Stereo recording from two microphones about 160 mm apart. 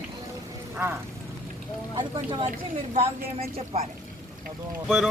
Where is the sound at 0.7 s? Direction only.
15° right (ahead or behind).